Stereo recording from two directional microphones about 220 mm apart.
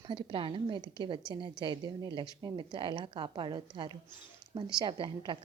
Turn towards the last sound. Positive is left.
turn(degrees=-20)  # may be behind; listen again after turning